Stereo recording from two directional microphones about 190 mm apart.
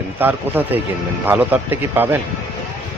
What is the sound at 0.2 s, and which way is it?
Speech, 10° right (ahead or behind).